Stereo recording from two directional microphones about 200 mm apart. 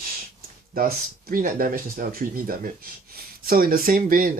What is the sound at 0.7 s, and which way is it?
Speech, 45° right (ahead or behind).